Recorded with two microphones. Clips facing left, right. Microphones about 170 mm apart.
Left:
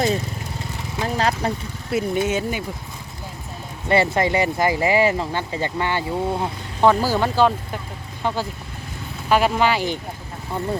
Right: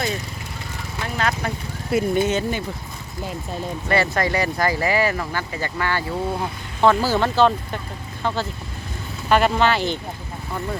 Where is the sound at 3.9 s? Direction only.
20° left (ahead or behind).